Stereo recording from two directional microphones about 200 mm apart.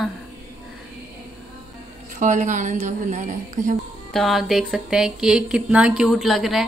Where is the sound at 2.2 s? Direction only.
40° right (ahead or behind).